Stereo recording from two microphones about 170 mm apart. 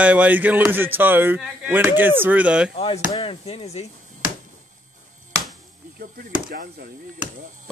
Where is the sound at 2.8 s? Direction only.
35° left (ahead or behind).